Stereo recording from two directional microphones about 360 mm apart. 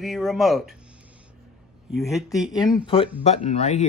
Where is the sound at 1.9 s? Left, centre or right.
Centre.